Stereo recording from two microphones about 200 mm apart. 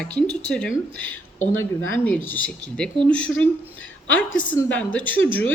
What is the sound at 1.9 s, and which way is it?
A woman's voice, 10° left (ahead or behind).